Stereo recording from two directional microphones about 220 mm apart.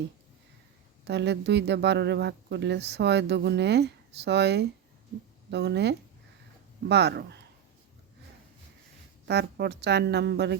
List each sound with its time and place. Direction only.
1.0 s speech: 50° right (ahead or behind)
9.2 s speech: 50° right (ahead or behind)